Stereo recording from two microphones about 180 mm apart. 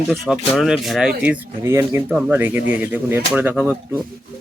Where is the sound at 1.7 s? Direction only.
15° right (ahead or behind).